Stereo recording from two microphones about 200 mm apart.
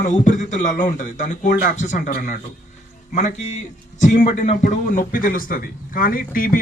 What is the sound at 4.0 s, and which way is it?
A man's voice, 40° left (ahead or behind).